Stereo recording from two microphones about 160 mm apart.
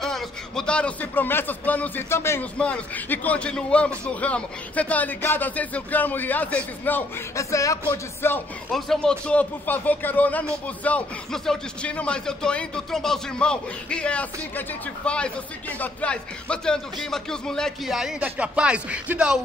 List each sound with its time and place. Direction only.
0.0 s speech: 5° left (ahead or behind)
8.7 s speech: centre (ahead or behind)